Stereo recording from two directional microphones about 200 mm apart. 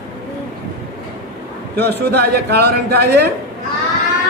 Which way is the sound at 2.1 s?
55° right (ahead or behind).